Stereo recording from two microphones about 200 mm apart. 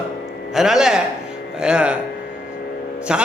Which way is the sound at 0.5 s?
Centre (ahead or behind).